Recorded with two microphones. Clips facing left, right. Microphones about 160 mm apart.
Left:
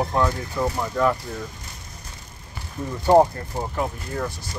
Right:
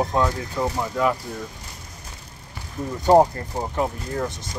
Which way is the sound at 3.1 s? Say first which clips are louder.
Even; 15° right (ahead or behind).